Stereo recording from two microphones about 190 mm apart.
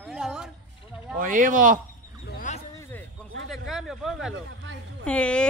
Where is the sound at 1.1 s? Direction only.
45° right (ahead or behind).